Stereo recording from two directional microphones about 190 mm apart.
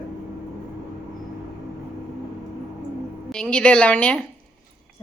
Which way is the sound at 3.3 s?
5° left (ahead or behind).